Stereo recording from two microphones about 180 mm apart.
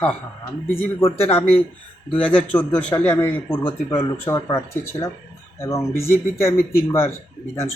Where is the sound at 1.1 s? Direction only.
15° left (ahead or behind).